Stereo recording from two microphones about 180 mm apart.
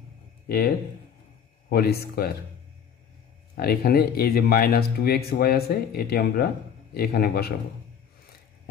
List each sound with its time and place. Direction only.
0.5 s speech: 60° left (ahead or behind)
3.5 s speech: 60° left (ahead or behind)